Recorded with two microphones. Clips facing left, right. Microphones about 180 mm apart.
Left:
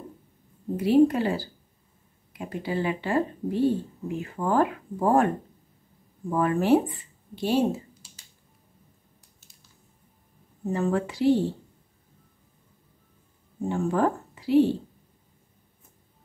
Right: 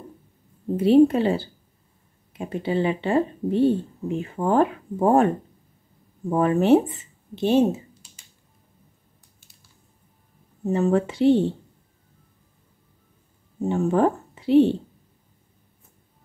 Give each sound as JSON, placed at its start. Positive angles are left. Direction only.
{"t": 0.7, "sound": "speech", "side_deg": -25}
{"t": 6.3, "sound": "speech", "side_deg": -25}
{"t": 10.6, "sound": "speech", "side_deg": -25}
{"t": 13.7, "sound": "speech", "side_deg": -20}